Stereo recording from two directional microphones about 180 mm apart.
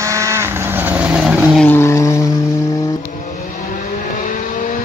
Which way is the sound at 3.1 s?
45° left (ahead or behind).